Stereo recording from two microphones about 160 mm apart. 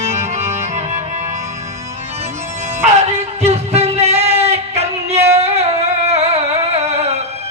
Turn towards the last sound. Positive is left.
turn(degrees=-40)  # may be behind; listen again after turning